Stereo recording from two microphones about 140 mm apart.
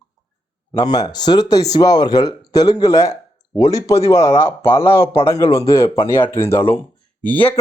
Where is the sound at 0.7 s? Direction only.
25° left (ahead or behind).